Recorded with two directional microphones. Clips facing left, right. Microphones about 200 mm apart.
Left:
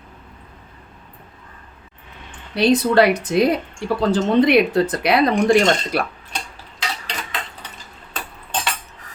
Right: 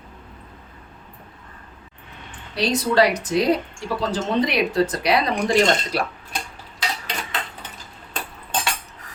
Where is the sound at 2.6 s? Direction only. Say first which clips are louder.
Left 4 dB; 60° left (ahead or behind).